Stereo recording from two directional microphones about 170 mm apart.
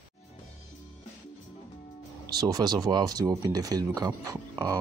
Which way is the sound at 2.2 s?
25° right (ahead or behind).